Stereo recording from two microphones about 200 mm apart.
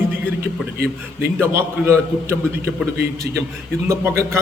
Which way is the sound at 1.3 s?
10° right (ahead or behind).